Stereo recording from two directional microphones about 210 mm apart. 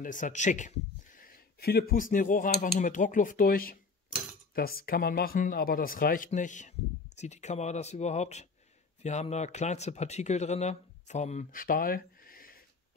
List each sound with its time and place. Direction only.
0.0 s speech: 35° left (ahead or behind)